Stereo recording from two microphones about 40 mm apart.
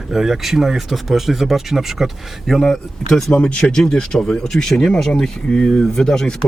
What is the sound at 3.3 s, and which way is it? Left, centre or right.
Speech, left.